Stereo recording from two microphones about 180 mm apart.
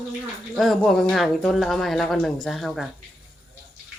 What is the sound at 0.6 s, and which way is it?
Speech, centre (ahead or behind).